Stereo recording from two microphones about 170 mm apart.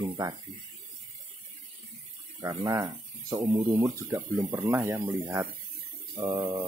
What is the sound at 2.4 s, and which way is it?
Speech, 20° right (ahead or behind).